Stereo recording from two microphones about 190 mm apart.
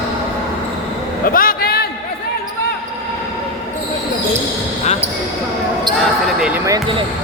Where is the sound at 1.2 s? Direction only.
50° left (ahead or behind).